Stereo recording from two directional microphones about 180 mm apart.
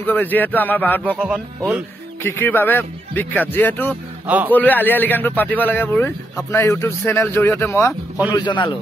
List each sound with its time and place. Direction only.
0.0 s a man's voice: 10° left (ahead or behind)
1.1 s speech: 10° right (ahead or behind)
2.2 s a man's voice: 10° left (ahead or behind)
8.3 s a man's voice: 25° left (ahead or behind)